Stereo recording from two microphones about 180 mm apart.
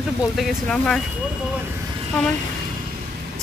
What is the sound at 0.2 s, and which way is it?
Speech, centre (ahead or behind).